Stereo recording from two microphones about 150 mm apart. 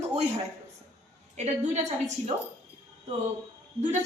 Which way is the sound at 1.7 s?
50° right (ahead or behind).